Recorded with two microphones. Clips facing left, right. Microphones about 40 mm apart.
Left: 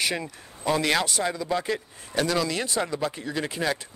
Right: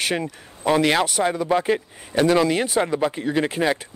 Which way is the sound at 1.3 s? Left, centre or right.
Right.